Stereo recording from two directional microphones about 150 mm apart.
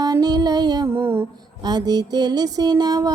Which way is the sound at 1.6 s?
25° right (ahead or behind).